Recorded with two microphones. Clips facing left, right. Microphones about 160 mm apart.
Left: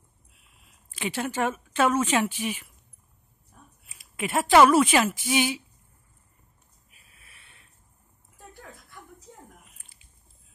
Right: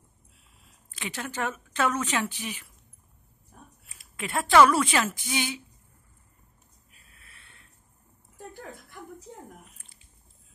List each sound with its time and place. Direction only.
0.9 s a woman's voice: 20° left (ahead or behind)
4.2 s a woman's voice: 20° left (ahead or behind)
7.2 s snort: 15° left (ahead or behind)